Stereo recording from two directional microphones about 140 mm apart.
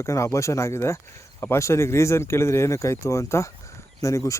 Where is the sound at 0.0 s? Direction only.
20° left (ahead or behind).